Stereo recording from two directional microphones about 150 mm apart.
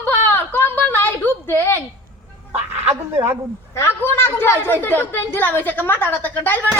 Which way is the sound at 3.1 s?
15° right (ahead or behind).